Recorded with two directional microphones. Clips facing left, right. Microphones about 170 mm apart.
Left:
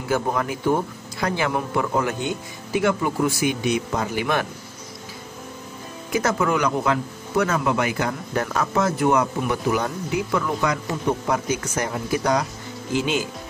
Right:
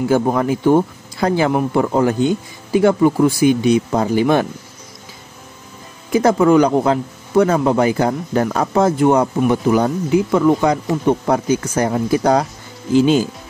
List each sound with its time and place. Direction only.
0.1 s speech: 30° right (ahead or behind)
6.1 s speech: 30° right (ahead or behind)